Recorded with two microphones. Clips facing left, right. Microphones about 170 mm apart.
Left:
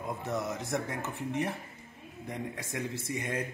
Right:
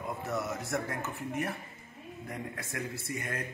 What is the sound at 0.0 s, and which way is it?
Speech, 15° left (ahead or behind).